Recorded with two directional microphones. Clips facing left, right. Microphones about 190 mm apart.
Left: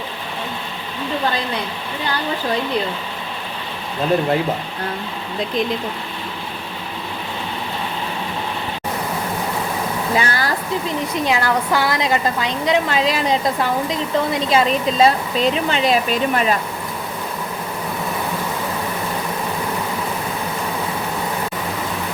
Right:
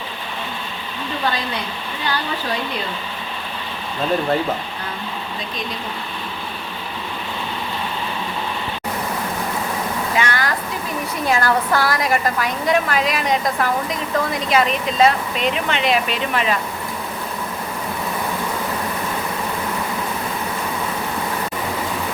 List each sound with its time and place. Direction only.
10.2 s speech: 35° left (ahead or behind)
11.3 s a woman's voice: 15° left (ahead or behind); by 16.6 s 40° left (ahead or behind)